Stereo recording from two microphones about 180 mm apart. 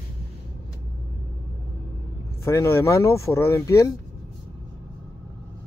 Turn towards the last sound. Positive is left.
turn(degrees=15)  # may be behind; listen again after turning